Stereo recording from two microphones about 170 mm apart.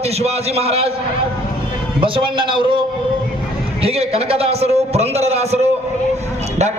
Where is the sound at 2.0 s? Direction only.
30° right (ahead or behind).